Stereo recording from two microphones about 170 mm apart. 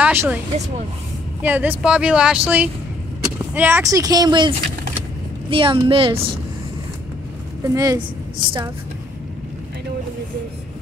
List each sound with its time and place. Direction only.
0.0 s speech: 10° right (ahead or behind)
1.4 s speech: 10° right (ahead or behind); by 6.2 s 30° right (ahead or behind)
7.6 s a woman's voice: 20° right (ahead or behind)